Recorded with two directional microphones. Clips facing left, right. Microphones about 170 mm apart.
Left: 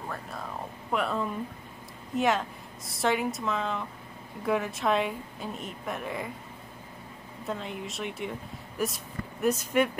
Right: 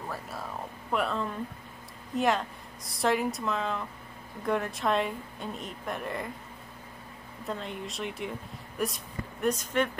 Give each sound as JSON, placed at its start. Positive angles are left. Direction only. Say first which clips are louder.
{"t": 0.1, "sound": "speech", "louder": "left 1 dB", "side_deg": -5}
{"t": 7.4, "sound": "speech", "louder": "left 1 dB", "side_deg": 0}